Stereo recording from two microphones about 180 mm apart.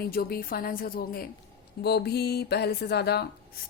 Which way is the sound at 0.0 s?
55° left (ahead or behind).